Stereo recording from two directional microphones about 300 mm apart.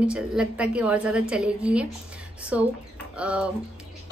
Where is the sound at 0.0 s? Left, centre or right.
Centre.